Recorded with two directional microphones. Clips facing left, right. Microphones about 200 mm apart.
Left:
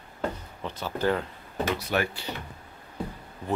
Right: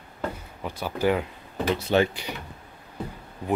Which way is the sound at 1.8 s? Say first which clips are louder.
Right 6 dB; 25° right (ahead or behind).